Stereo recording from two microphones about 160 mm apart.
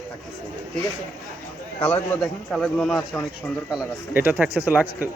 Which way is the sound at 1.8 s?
10° left (ahead or behind).